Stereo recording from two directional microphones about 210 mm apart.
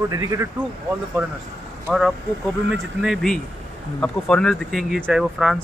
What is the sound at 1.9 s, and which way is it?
Speech, centre (ahead or behind).